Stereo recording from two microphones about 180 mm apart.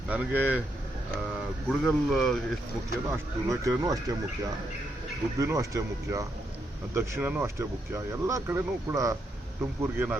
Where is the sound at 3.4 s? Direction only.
20° right (ahead or behind).